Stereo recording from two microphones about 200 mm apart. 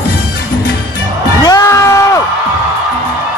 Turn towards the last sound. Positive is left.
turn(degrees=15)  # may be behind; listen again after turning